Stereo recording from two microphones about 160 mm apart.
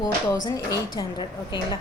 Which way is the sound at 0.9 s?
25° left (ahead or behind).